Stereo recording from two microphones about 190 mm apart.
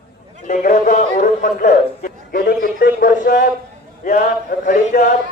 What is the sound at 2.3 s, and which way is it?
A man's voice, 50° left (ahead or behind).